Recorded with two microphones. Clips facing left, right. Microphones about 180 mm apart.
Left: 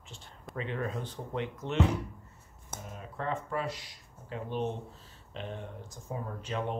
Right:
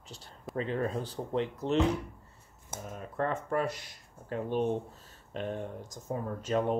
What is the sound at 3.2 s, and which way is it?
Speech, 50° right (ahead or behind).